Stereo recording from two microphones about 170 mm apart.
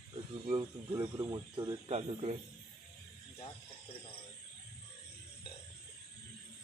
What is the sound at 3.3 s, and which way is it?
Speech, 30° left (ahead or behind).